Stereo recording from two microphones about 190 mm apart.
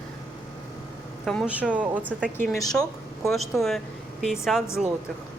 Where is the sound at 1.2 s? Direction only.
5° right (ahead or behind).